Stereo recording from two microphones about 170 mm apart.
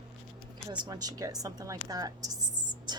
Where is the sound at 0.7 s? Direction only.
25° right (ahead or behind).